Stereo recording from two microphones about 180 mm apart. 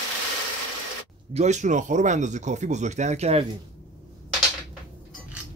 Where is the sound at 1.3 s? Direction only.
40° right (ahead or behind).